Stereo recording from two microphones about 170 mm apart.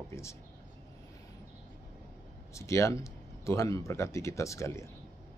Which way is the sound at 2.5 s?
15° left (ahead or behind).